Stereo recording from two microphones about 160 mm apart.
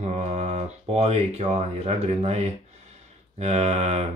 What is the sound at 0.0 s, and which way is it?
Speech, 45° right (ahead or behind).